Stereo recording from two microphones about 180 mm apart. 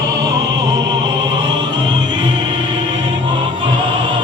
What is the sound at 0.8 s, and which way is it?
Opera, 25° right (ahead or behind).